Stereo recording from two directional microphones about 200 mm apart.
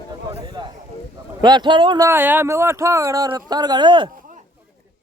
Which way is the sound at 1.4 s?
20° right (ahead or behind).